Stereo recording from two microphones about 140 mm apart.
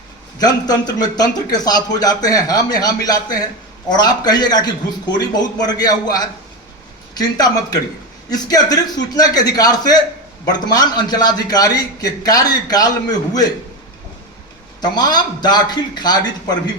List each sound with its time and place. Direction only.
0.3 s a man's voice: 30° left (ahead or behind)
14.8 s a man's voice: 30° left (ahead or behind)